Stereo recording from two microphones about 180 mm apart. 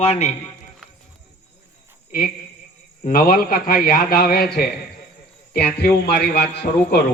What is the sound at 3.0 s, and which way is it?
A man's voice, 50° left (ahead or behind).